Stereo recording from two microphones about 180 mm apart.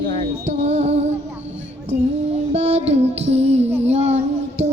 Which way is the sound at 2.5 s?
35° right (ahead or behind).